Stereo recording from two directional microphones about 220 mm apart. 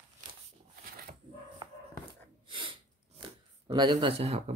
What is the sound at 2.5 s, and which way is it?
Speech, 20° right (ahead or behind).